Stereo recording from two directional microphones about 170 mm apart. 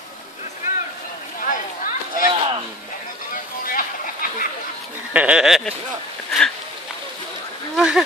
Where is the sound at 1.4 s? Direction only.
50° left (ahead or behind).